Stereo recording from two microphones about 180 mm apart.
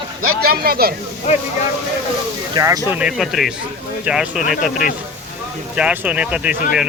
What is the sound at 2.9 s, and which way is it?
Speech, 5° right (ahead or behind).